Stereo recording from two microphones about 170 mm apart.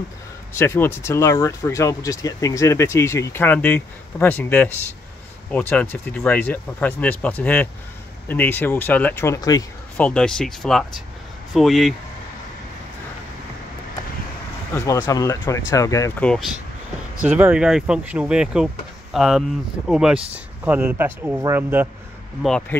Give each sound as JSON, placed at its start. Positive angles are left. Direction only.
{"t": 0.6, "sound": "speech", "side_deg": 15}
{"t": 9.9, "sound": "speech", "side_deg": 5}
{"t": 14.7, "sound": "speech", "side_deg": 20}
{"t": 16.2, "sound": "speech", "side_deg": 5}
{"t": 17.2, "sound": "speech", "side_deg": -10}
{"t": 22.7, "sound": "speech", "side_deg": 10}